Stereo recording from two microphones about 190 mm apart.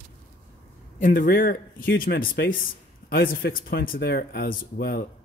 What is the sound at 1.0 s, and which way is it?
Speech, 45° left (ahead or behind).